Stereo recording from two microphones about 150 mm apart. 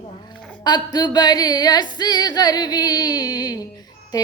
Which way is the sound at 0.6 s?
30° left (ahead or behind).